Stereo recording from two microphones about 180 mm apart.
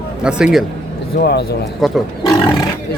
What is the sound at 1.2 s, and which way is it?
Speech, 65° left (ahead or behind).